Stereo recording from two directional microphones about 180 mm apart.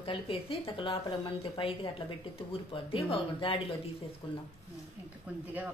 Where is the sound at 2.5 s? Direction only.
30° left (ahead or behind).